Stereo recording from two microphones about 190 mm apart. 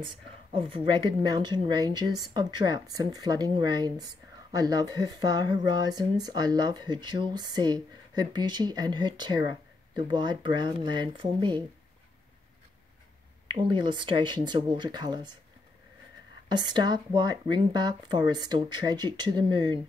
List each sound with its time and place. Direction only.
0.6 s speech: 25° right (ahead or behind)
13.5 s speech: 25° right (ahead or behind)
16.4 s speech: 25° right (ahead or behind)